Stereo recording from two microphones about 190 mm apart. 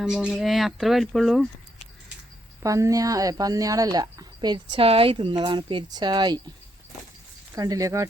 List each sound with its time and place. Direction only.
0.0 s speech: 5° right (ahead or behind)
2.6 s speech: 15° right (ahead or behind)
7.5 s speech: 20° right (ahead or behind)